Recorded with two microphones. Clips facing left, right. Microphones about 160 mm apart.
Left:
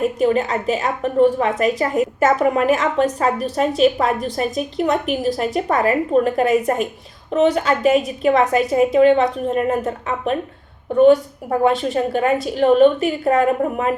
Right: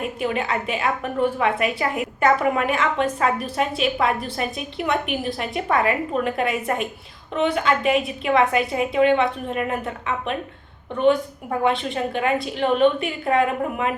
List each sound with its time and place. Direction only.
0.0 s a woman's voice: 40° left (ahead or behind)